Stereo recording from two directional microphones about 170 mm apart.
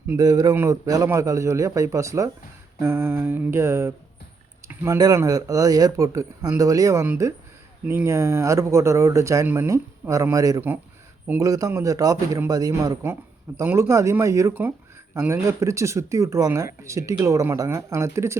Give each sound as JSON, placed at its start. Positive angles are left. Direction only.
{"t": 0.1, "sound": "speech", "side_deg": -20}
{"t": 4.7, "sound": "a sound", "side_deg": -10}
{"t": 4.9, "sound": "speech", "side_deg": -20}